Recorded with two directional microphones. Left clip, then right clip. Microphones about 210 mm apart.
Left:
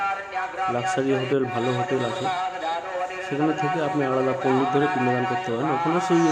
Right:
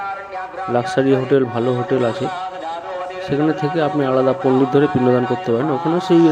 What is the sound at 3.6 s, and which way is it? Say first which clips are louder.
Speech: right 5 dB; 15° right (ahead or behind).